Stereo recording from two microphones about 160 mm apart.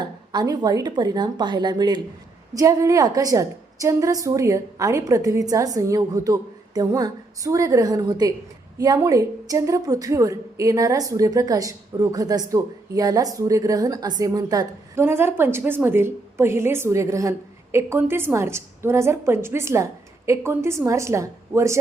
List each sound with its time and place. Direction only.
0.0 s a woman's voice: 25° right (ahead or behind)